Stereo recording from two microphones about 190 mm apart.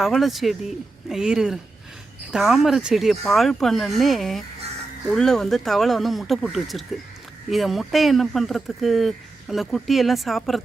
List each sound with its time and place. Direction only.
0.0 s speech: centre (ahead or behind)